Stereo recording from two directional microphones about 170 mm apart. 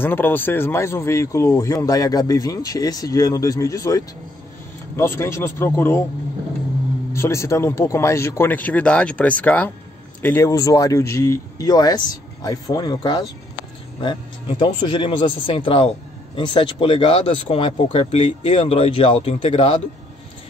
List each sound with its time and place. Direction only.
0.0 s speech: 10° left (ahead or behind)
7.2 s speech: 15° left (ahead or behind); by 19.8 s 30° left (ahead or behind)